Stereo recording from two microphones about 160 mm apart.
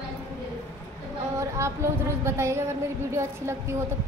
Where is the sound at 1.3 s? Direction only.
15° right (ahead or behind).